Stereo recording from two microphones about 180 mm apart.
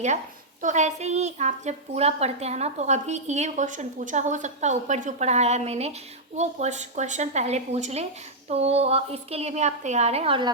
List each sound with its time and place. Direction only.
0.6 s a woman's voice: 40° right (ahead or behind)